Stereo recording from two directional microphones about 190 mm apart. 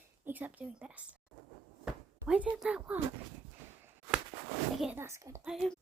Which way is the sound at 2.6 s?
5° right (ahead or behind).